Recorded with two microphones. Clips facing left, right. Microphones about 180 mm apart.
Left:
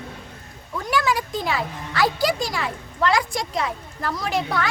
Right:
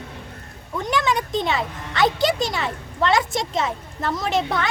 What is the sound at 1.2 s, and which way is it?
Speech, centre (ahead or behind).